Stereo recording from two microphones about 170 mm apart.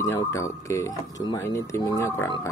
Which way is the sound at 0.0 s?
15° left (ahead or behind).